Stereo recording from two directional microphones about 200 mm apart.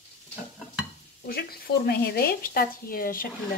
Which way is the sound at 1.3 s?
50° left (ahead or behind).